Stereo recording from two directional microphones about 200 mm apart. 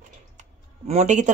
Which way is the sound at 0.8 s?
35° right (ahead or behind).